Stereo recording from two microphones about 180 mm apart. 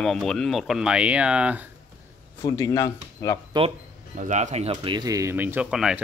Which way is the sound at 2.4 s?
15° left (ahead or behind).